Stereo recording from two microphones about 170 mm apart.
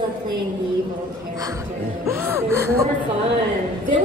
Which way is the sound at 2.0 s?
15° right (ahead or behind).